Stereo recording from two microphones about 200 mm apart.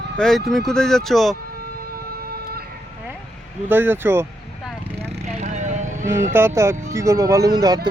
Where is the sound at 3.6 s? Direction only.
10° right (ahead or behind).